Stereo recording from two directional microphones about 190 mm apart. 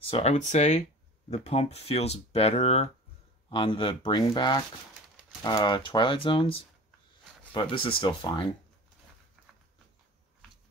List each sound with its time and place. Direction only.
0.0 s speech: 35° left (ahead or behind)
7.7 s speech: 25° left (ahead or behind)